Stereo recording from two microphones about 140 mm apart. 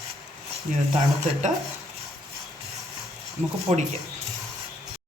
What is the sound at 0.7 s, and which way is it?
Speech, 65° right (ahead or behind).